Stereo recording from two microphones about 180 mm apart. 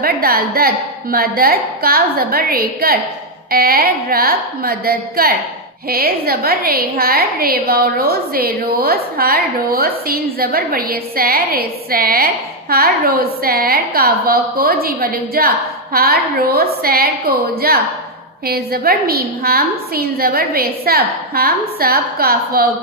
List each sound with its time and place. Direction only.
0.0 s a woman's voice: 55° right (ahead or behind)